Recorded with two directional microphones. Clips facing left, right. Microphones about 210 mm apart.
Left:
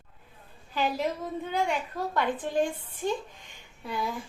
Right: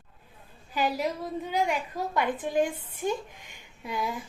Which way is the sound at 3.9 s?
20° right (ahead or behind).